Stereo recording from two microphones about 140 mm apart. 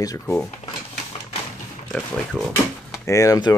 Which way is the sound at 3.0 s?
20° left (ahead or behind).